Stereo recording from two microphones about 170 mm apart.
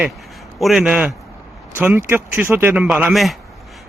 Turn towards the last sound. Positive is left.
turn(degrees=0)  # may be behind; listen again after turning